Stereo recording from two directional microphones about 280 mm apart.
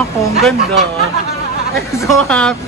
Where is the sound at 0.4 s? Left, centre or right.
Centre.